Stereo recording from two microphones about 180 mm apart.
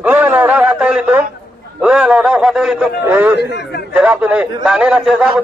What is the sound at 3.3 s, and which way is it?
Speech, 70° left (ahead or behind).